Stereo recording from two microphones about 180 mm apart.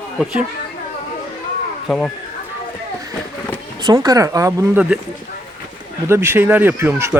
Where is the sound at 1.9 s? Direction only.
5° left (ahead or behind).